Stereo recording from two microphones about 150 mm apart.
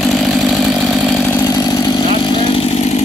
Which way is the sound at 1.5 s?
25° left (ahead or behind).